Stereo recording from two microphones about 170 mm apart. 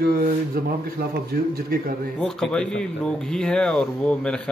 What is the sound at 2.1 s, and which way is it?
Speech, 5° left (ahead or behind).